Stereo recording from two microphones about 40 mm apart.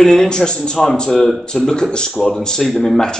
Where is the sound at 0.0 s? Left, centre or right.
Centre.